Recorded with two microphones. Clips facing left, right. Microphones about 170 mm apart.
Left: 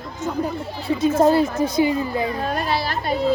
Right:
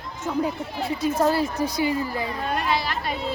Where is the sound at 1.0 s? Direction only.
25° left (ahead or behind).